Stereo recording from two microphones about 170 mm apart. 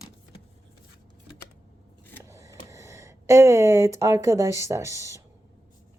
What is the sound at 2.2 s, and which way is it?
Speech, 20° right (ahead or behind).